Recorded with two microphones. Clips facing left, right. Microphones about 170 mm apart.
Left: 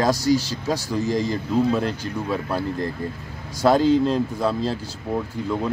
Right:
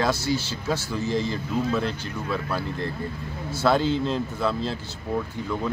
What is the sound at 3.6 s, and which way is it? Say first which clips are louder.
Speech: left 5 dB; 40° left (ahead or behind).